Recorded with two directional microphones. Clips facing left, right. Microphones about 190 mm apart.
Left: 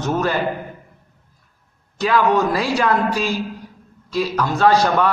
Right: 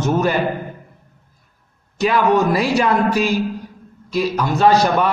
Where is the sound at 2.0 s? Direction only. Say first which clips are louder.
Right 1 dB; 20° right (ahead or behind).